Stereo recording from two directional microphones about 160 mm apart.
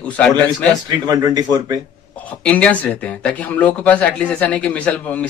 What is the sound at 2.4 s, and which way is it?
Speech, 10° left (ahead or behind).